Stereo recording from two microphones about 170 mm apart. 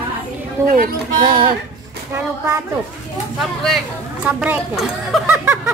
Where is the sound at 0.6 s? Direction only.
20° right (ahead or behind).